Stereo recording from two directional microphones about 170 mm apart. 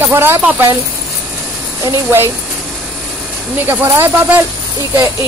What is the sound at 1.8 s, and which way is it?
Speech, 15° right (ahead or behind).